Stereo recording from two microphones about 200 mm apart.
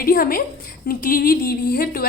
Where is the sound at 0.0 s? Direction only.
45° left (ahead or behind).